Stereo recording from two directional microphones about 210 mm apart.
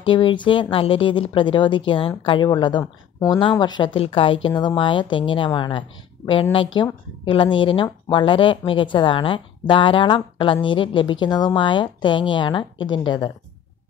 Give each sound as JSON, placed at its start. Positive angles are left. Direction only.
{"t": 0.0, "sound": "speech", "side_deg": 25}